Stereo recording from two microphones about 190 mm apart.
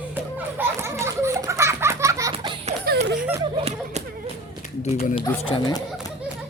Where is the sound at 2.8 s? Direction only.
60° right (ahead or behind).